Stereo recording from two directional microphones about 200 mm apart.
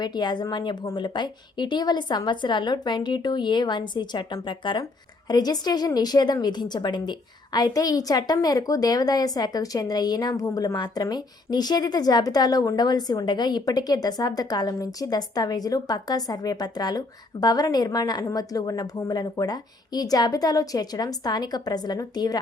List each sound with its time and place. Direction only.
0.0 s a woman's voice: 20° left (ahead or behind)